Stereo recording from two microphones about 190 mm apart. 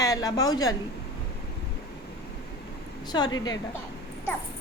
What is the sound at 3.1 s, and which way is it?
Speech, 20° left (ahead or behind).